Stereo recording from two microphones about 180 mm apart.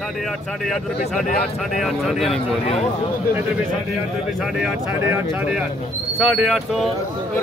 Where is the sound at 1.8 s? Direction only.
Centre (ahead or behind).